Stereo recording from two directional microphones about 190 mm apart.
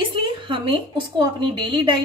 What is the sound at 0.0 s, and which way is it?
A woman's voice, 25° right (ahead or behind).